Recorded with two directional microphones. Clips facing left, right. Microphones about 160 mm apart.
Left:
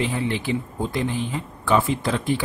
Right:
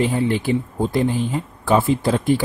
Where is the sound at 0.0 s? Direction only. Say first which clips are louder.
Right 5 dB; 40° right (ahead or behind).